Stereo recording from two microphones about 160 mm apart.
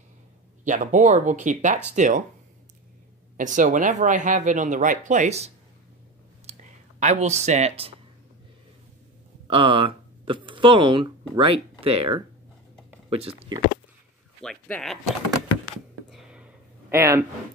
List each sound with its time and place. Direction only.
0.7 s speech: 50° right (ahead or behind)
3.3 s speech: 50° right (ahead or behind)
6.5 s clicking: 40° right (ahead or behind)
7.0 s speech: 45° right (ahead or behind)
9.5 s speech: 35° right (ahead or behind)
14.4 s speech: 5° left (ahead or behind)
16.1 s a sound: 5° right (ahead or behind)
16.9 s speech: 15° right (ahead or behind)